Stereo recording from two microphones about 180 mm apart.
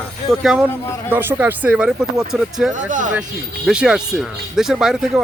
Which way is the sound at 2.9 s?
45° right (ahead or behind).